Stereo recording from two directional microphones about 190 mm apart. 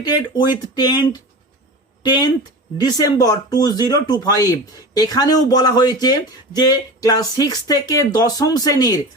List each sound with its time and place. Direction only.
0.0 s speech: 20° left (ahead or behind)